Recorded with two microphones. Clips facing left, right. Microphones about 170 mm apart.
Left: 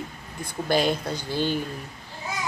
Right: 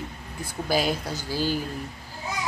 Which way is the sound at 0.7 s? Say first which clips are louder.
Left 2 dB; 5° right (ahead or behind).